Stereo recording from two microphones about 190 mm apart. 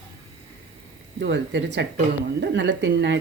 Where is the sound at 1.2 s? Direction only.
65° right (ahead or behind).